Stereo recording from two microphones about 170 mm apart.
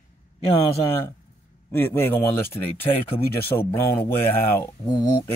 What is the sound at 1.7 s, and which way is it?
A man's voice, 15° left (ahead or behind).